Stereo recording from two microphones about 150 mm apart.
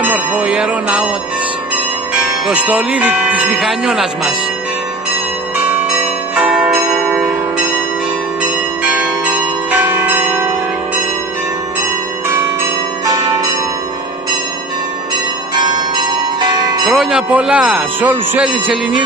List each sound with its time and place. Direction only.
0.0 s music: 10° right (ahead or behind)
2.4 s speech: 10° right (ahead or behind)
6.3 s church bell: 5° right (ahead or behind)
8.9 s change ringing: 10° right (ahead or behind)
16.3 s church bell: 30° right (ahead or behind)
16.8 s speech: centre (ahead or behind)